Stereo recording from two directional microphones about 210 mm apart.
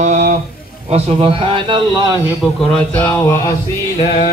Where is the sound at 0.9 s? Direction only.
25° right (ahead or behind).